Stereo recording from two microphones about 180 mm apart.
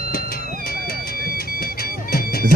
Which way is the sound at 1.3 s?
55° left (ahead or behind).